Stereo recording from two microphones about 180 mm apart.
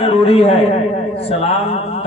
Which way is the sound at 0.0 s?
35° left (ahead or behind).